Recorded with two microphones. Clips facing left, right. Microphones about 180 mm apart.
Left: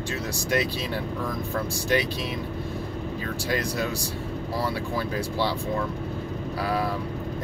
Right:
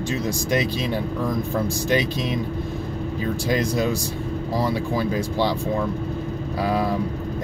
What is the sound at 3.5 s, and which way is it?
Speech, 20° right (ahead or behind).